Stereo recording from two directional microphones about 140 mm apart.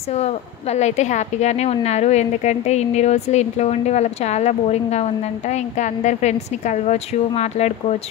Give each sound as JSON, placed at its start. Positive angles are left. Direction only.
{"t": 0.1, "sound": "a woman's voice", "side_deg": 50}